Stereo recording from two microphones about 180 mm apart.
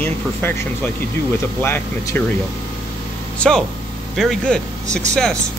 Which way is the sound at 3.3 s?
5° left (ahead or behind).